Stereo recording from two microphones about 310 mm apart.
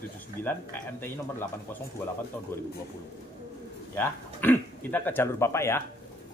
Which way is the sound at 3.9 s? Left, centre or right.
Centre.